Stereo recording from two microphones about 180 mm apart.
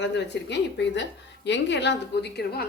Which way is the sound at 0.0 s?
75° left (ahead or behind).